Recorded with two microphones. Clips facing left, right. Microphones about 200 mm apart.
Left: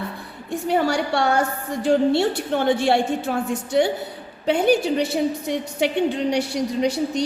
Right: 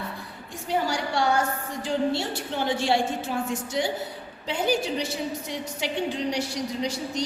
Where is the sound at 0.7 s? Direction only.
65° left (ahead or behind).